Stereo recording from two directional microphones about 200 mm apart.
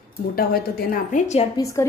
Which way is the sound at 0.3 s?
50° left (ahead or behind).